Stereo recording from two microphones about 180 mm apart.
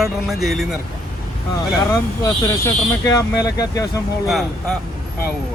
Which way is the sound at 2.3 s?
20° left (ahead or behind).